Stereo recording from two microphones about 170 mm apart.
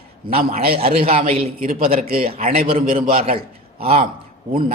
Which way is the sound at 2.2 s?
35° right (ahead or behind).